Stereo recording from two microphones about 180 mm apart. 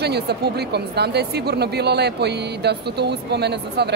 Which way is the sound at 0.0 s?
65° right (ahead or behind).